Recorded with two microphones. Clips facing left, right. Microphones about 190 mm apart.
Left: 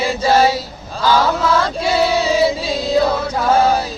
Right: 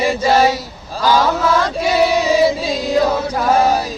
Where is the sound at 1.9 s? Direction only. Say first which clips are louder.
Right 1 dB; 15° right (ahead or behind).